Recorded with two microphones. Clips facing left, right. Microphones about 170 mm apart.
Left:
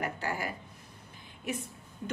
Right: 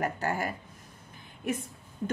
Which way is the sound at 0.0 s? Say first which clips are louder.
Right 4 dB; 45° right (ahead or behind).